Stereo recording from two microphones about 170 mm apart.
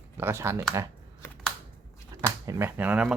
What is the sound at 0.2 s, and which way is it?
Speech, 15° right (ahead or behind).